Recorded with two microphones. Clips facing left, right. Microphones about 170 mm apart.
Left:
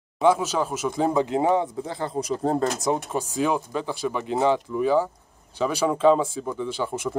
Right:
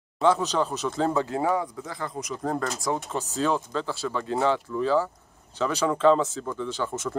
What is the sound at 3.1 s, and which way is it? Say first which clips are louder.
Speech: left 2 dB; 10° left (ahead or behind).